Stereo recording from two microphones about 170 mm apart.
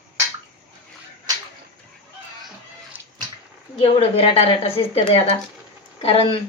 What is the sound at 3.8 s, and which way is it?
Speech, 35° left (ahead or behind).